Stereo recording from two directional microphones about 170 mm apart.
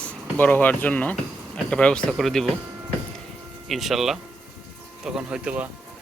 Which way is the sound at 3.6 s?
Centre (ahead or behind).